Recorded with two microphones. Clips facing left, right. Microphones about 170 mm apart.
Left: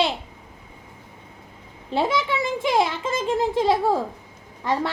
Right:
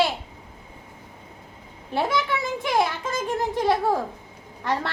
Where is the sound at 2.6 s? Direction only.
20° left (ahead or behind).